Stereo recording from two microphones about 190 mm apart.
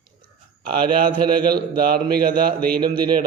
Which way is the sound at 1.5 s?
55° right (ahead or behind).